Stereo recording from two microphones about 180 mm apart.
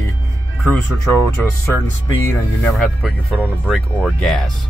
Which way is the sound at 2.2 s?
10° left (ahead or behind).